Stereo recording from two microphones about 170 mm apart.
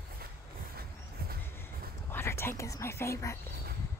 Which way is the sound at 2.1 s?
15° left (ahead or behind).